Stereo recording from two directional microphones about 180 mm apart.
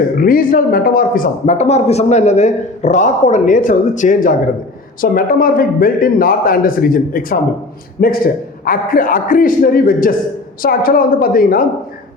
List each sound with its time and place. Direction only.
0.2 s speech: 50° left (ahead or behind)